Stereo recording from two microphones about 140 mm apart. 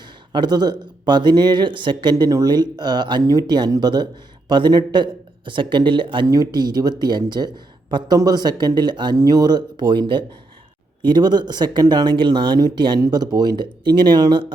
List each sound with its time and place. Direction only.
0.0 s speech: 30° right (ahead or behind)
6.2 s speech: 25° right (ahead or behind)